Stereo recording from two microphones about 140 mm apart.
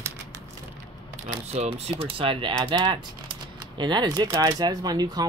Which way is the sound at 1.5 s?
45° right (ahead or behind).